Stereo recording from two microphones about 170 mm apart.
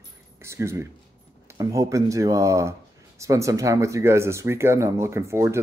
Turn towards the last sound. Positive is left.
turn(degrees=-15)  # may be behind; listen again after turning